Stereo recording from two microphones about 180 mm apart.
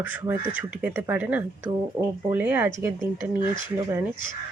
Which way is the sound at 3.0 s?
25° left (ahead or behind).